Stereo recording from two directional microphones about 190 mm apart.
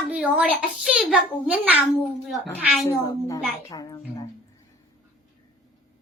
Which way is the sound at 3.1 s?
20° left (ahead or behind).